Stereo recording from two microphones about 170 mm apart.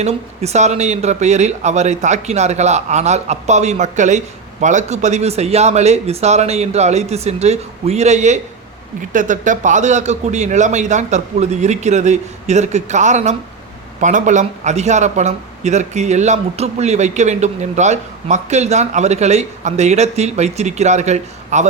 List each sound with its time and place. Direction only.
0.0 s a man's voice: 40° right (ahead or behind)